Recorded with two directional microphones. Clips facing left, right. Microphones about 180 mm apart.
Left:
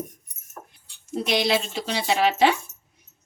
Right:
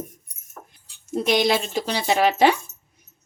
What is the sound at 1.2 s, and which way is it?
A woman's voice, 50° right (ahead or behind).